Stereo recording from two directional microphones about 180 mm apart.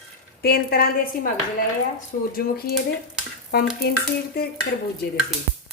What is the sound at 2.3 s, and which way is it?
A woman's voice, 55° left (ahead or behind).